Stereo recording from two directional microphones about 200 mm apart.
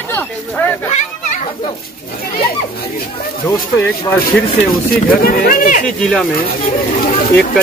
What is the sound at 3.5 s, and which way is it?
Speech, 15° left (ahead or behind).